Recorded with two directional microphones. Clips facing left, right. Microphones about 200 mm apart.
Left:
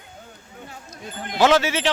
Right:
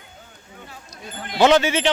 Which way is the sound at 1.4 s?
Centre (ahead or behind).